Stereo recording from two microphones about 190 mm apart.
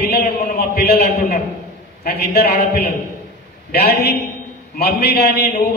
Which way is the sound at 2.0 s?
55° left (ahead or behind).